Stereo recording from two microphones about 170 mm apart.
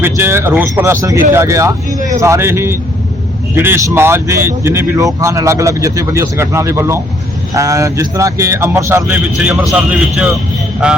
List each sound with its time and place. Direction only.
0.0 s speech: 15° right (ahead or behind)